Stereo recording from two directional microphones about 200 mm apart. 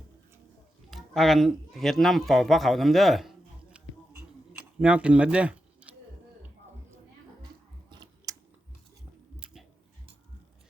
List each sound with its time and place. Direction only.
0.9 s speech: centre (ahead or behind)
4.5 s a sound: 5° right (ahead or behind)
7.9 s scissors: 20° right (ahead or behind)
9.4 s tick-tock: 5° right (ahead or behind)